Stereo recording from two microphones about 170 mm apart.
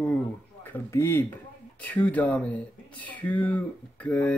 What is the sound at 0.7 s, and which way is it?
Speech, 15° left (ahead or behind).